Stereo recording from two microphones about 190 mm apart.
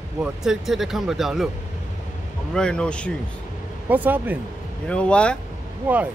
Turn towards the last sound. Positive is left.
turn(degrees=-10)  # may be behind; listen again after turning